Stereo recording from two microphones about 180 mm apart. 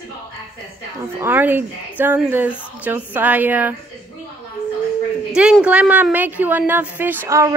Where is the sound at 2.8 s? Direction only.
10° right (ahead or behind).